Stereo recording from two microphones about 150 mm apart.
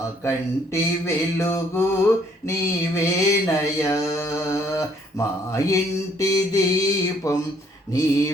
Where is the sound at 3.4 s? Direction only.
20° left (ahead or behind).